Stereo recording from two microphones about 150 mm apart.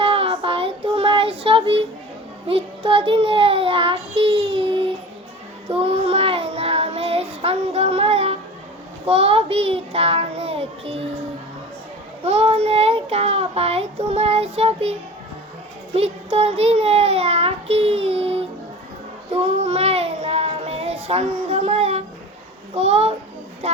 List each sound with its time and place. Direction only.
0.0 s child singing: 40° right (ahead or behind)
12.2 s child singing: 40° right (ahead or behind)
16.0 s a child's voice: 45° right (ahead or behind)
19.3 s child singing: 45° right (ahead or behind)
22.7 s a child's voice: 45° right (ahead or behind)